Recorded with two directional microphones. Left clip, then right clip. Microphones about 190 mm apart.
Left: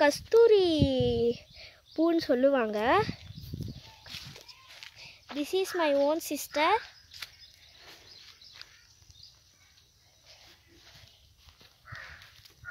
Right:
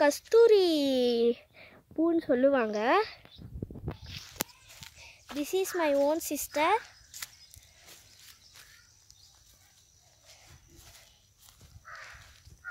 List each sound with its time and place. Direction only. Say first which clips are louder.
0.0 s a child's voice: even; 5° right (ahead or behind)
4.9 s speech: even; 5° right (ahead or behind)
8.6 s a sound: left 7 dB; 45° left (ahead or behind)